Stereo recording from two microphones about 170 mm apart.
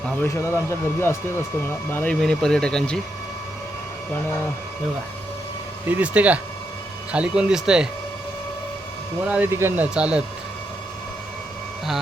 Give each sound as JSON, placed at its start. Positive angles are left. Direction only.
{"t": 0.2, "sound": "speech", "side_deg": 15}
{"t": 5.8, "sound": "speech", "side_deg": -10}
{"t": 9.2, "sound": "speech", "side_deg": -10}